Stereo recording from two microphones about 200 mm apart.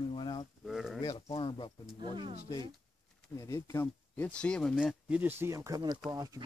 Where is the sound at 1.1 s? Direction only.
25° left (ahead or behind).